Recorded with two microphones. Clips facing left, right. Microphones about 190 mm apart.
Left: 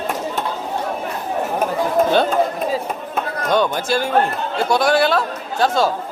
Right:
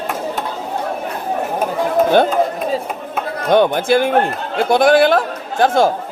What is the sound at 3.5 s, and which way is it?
A man's voice, 55° right (ahead or behind).